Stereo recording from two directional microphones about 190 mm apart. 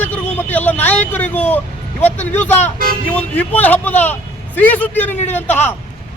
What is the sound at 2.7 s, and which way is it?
Speech, 50° right (ahead or behind).